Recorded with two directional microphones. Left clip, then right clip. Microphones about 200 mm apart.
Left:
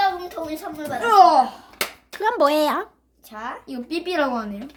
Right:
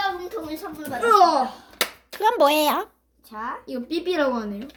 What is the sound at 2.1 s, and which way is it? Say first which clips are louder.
Speech: even; 10° left (ahead or behind).